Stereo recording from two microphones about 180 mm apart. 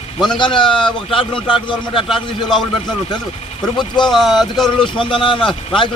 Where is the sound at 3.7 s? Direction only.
25° left (ahead or behind).